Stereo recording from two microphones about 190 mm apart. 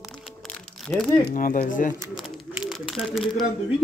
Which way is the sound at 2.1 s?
Centre (ahead or behind).